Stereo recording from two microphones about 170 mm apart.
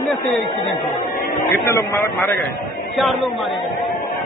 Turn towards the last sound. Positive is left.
turn(degrees=0)  # may be behind; listen again after turning